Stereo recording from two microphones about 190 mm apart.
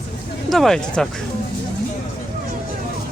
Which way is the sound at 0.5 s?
Centre (ahead or behind).